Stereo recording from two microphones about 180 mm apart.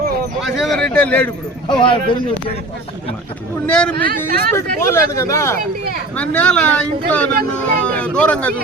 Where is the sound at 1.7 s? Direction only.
30° left (ahead or behind).